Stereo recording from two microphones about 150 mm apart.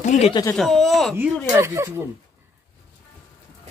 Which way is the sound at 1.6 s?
20° right (ahead or behind).